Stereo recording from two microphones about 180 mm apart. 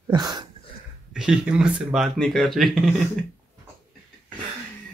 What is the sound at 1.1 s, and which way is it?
Speech, 5° right (ahead or behind).